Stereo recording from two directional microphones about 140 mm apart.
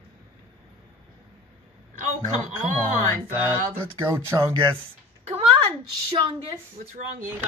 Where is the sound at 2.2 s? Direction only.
60° right (ahead or behind).